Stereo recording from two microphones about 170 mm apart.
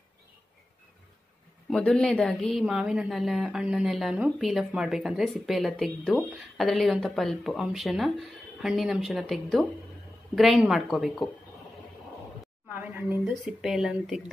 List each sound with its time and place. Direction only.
1.7 s a woman's voice: 5° left (ahead or behind)
12.6 s a woman's voice: 10° right (ahead or behind)